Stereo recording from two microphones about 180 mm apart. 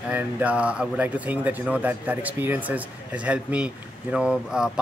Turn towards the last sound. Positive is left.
turn(degrees=-5)  # may be behind; listen again after turning